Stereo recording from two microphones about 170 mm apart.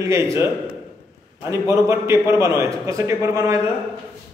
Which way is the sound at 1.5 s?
15° right (ahead or behind).